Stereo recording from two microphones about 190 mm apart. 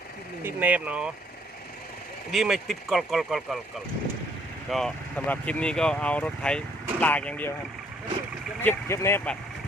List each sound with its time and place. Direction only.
0.4 s speech: 10° right (ahead or behind)
2.3 s speech: centre (ahead or behind)
4.7 s speech: 5° left (ahead or behind)
8.6 s speech: 15° left (ahead or behind)